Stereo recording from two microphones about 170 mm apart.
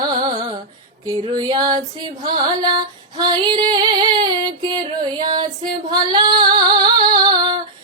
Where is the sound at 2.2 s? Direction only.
30° right (ahead or behind).